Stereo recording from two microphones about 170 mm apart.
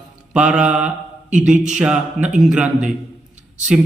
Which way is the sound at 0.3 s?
5° right (ahead or behind).